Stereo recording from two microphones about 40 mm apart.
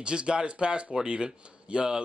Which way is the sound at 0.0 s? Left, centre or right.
Right.